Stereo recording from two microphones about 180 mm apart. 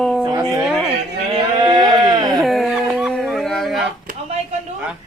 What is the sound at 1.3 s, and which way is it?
Sheep, 25° right (ahead or behind).